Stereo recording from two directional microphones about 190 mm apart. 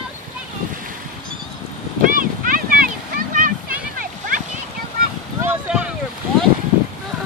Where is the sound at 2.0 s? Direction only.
45° right (ahead or behind).